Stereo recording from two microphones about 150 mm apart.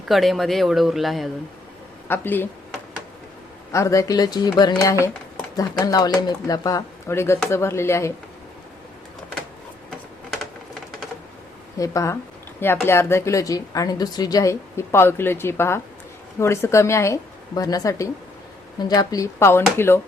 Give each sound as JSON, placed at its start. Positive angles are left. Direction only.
{"t": 0.1, "sound": "speech", "side_deg": 0}
{"t": 2.0, "sound": "a woman's voice", "side_deg": 15}
{"t": 3.7, "sound": "a woman's voice", "side_deg": 20}
{"t": 11.8, "sound": "a woman's voice", "side_deg": 20}